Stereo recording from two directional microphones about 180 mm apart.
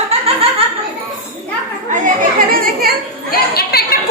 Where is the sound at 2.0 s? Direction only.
50° right (ahead or behind).